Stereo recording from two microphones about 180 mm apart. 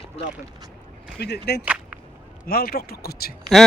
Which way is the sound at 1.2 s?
65° left (ahead or behind).